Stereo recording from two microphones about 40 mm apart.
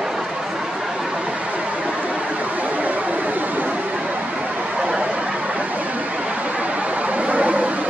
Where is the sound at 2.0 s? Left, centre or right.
Right.